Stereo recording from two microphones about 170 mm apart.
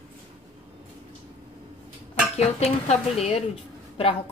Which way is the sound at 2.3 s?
40° left (ahead or behind).